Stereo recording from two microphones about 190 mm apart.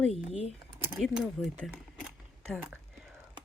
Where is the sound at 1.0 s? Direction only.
5° right (ahead or behind).